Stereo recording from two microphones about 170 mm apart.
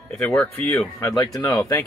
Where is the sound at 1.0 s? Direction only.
20° left (ahead or behind).